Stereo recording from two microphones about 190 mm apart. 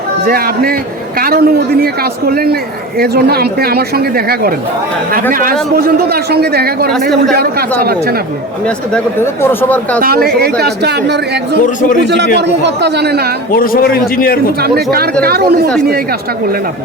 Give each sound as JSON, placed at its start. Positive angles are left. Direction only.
{"t": 0.3, "sound": "a man's voice", "side_deg": -50}
{"t": 8.9, "sound": "speech", "side_deg": 10}
{"t": 10.0, "sound": "a man's voice", "side_deg": -50}
{"t": 11.5, "sound": "a man's voice", "side_deg": 45}
{"t": 12.4, "sound": "a man's voice", "side_deg": -65}
{"t": 13.5, "sound": "a man's voice", "side_deg": 50}
{"t": 14.6, "sound": "a man's voice", "side_deg": -55}